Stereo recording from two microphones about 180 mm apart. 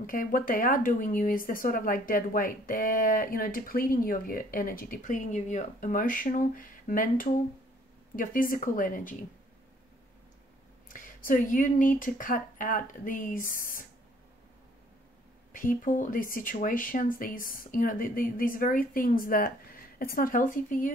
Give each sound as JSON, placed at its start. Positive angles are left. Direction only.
{"t": 0.0, "sound": "speech", "side_deg": 50}
{"t": 10.9, "sound": "speech", "side_deg": 50}
{"t": 15.5, "sound": "speech", "side_deg": 50}